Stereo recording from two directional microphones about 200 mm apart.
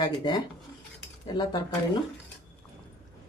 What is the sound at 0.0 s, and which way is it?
Speech, 20° left (ahead or behind).